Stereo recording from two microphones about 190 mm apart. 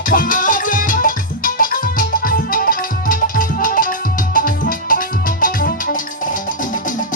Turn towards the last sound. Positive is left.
turn(degrees=45)  # may be behind; listen again after turning